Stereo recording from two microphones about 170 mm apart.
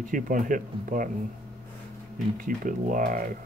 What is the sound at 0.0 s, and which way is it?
Speech, 50° right (ahead or behind).